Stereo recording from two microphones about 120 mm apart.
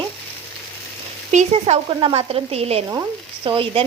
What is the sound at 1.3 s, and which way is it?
Frying, 75° right (ahead or behind).